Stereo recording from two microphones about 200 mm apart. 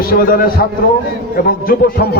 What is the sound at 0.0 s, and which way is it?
A man's voice, 45° left (ahead or behind).